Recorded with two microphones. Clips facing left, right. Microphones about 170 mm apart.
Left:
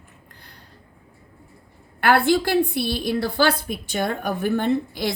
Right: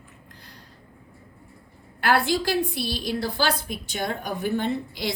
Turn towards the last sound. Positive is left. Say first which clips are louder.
# left 5 dB
turn(degrees=55)  # may be behind; listen again after turning